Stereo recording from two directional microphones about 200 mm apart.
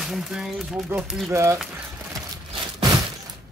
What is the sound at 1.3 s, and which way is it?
Speech, 15° right (ahead or behind).